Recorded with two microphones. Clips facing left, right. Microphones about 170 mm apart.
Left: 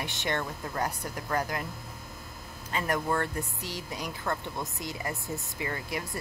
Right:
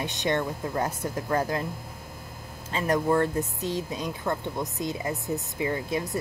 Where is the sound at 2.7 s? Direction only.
20° right (ahead or behind).